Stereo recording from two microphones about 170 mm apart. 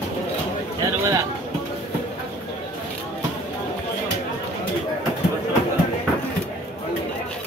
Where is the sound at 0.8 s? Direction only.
20° right (ahead or behind).